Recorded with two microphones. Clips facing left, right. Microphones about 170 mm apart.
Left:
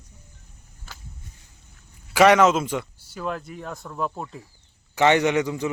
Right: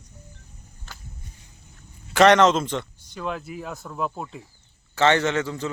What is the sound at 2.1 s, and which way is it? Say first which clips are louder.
A man's voice: even; 5° left (ahead or behind).